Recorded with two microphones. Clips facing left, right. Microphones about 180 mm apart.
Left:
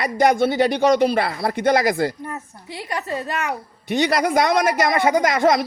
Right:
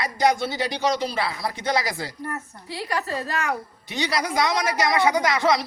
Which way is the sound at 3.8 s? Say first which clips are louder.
Left 7 dB; 55° left (ahead or behind).